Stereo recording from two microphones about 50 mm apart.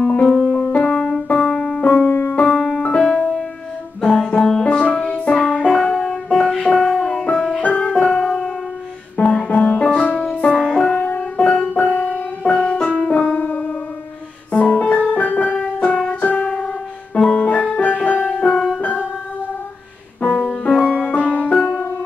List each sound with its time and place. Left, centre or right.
0.0 s music: centre
1.8 s music: left
2.4 s music: centre
7.5 s music: left
8.0 s music: centre
10.6 s music: centre
11.1 s music: left
13.4 s music: left
14.5 s keyboard: left
16.1 s music: left
16.4 s music: centre
20.2 s music: centre